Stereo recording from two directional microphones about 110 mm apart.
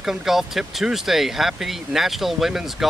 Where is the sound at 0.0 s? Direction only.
5° right (ahead or behind).